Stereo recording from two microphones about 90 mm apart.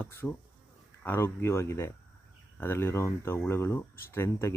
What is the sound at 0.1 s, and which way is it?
Speech, 25° left (ahead or behind).